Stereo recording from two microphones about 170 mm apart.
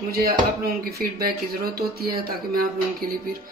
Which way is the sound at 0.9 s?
60° right (ahead or behind).